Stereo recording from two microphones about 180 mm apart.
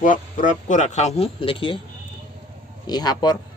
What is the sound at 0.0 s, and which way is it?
Speech, 45° left (ahead or behind).